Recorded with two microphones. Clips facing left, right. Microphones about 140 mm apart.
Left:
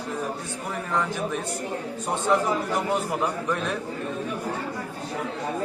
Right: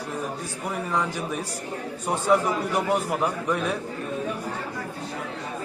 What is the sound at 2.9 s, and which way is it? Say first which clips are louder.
Speech: right 1 dB; 5° right (ahead or behind).